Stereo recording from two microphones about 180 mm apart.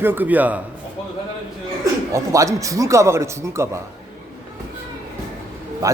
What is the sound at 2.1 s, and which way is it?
A man's voice, 15° right (ahead or behind).